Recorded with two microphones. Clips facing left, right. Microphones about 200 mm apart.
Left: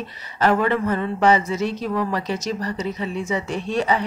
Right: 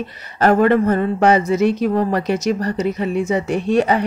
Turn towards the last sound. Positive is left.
turn(degrees=-60)  # may be behind; listen again after turning